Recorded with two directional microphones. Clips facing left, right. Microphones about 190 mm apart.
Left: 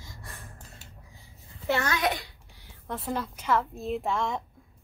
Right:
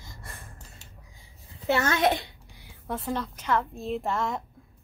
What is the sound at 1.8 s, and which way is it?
Speech, 25° right (ahead or behind).